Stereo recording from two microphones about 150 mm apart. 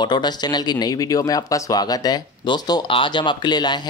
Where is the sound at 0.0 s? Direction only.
30° left (ahead or behind).